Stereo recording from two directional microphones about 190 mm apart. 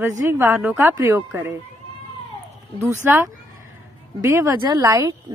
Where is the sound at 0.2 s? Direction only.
15° right (ahead or behind).